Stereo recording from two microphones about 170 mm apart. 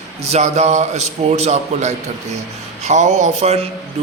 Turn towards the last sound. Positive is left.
turn(degrees=-40)  # may be behind; listen again after turning